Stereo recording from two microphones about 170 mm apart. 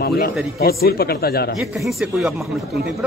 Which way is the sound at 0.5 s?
65° left (ahead or behind).